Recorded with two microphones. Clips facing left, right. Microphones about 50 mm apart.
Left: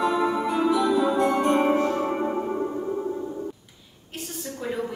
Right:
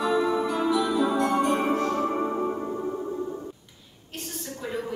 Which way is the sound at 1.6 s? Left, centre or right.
Centre.